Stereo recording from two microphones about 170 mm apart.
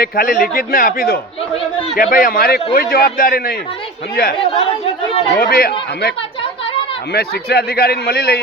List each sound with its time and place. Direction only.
0.0 s speech: 55° left (ahead or behind)
5.4 s speech: 60° left (ahead or behind)
7.1 s speech: 70° left (ahead or behind)